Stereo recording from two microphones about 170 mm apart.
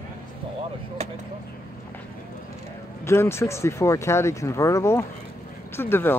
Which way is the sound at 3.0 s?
15° left (ahead or behind).